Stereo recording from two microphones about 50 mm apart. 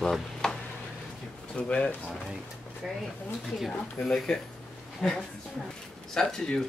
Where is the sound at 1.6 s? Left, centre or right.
Left.